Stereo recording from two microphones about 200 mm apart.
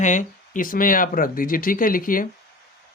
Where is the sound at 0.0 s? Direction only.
40° left (ahead or behind).